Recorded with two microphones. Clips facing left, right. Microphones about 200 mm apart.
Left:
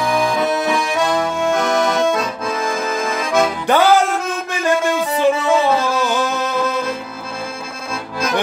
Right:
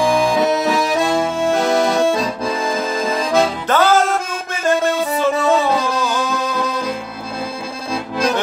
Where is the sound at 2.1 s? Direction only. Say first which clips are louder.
Right 1 dB; 30° right (ahead or behind).